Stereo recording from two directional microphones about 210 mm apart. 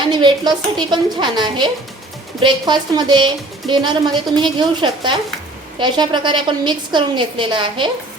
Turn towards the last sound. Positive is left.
turn(degrees=-20)  # may be behind; listen again after turning